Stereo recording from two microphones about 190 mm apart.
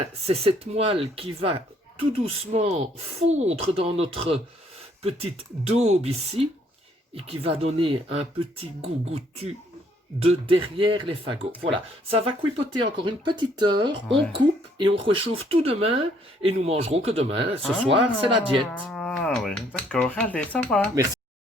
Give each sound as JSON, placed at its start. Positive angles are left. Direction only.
{"t": 0.3, "sound": "speech", "side_deg": -30}
{"t": 14.3, "sound": "a sound", "side_deg": -25}
{"t": 15.0, "sound": "speech", "side_deg": -30}
{"t": 18.9, "sound": "speech", "side_deg": 0}